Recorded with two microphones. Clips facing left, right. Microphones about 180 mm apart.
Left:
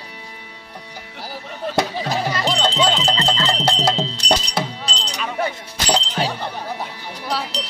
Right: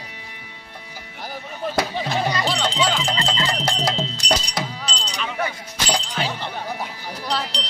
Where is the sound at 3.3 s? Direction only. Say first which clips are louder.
Left 3 dB; 10° right (ahead or behind).